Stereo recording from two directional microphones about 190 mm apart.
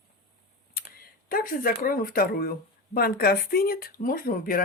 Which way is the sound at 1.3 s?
50° left (ahead or behind).